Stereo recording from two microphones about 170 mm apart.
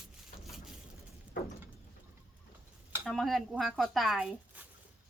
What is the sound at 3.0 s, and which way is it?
Speech, centre (ahead or behind).